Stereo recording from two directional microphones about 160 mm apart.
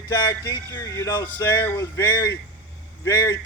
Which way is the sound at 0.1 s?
20° left (ahead or behind).